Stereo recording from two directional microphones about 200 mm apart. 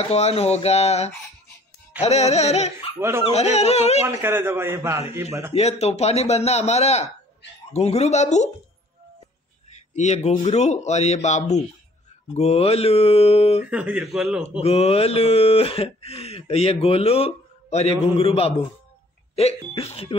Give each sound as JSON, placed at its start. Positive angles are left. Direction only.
{"t": 0.0, "sound": "speech", "side_deg": 30}
{"t": 3.0, "sound": "a man's voice", "side_deg": -15}
{"t": 3.3, "sound": "speech", "side_deg": 30}
{"t": 4.0, "sound": "a man's voice", "side_deg": -10}
{"t": 5.5, "sound": "speech", "side_deg": 30}
{"t": 9.7, "sound": "speech", "side_deg": 35}
{"t": 13.6, "sound": "speech", "side_deg": -5}
{"t": 14.6, "sound": "speech", "side_deg": 30}
{"t": 19.7, "sound": "speech", "side_deg": 30}